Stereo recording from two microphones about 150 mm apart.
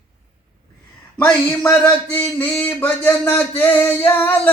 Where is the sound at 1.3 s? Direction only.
10° left (ahead or behind).